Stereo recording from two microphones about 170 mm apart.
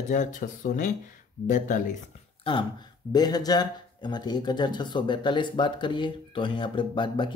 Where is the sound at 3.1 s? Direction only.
25° left (ahead or behind).